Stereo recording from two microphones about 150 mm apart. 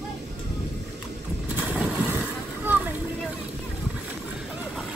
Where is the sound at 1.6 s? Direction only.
10° right (ahead or behind).